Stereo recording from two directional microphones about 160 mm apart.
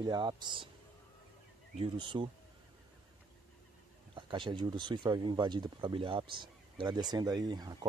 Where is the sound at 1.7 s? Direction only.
35° right (ahead or behind).